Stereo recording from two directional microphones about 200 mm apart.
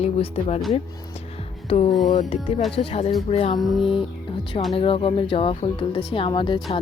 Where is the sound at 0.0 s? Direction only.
30° left (ahead or behind).